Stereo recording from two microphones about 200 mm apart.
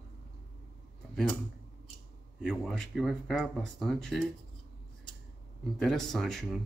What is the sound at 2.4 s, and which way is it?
Speech, 5° left (ahead or behind).